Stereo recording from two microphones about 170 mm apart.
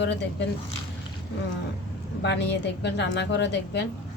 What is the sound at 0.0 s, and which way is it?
Speech, 90° left.